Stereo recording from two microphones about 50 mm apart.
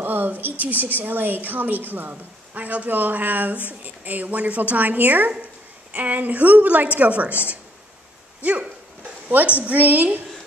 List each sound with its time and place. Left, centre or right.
0.0 s a woman's voice: right